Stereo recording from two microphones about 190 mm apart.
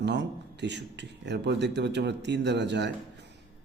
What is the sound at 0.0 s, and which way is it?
Speech, 65° right (ahead or behind).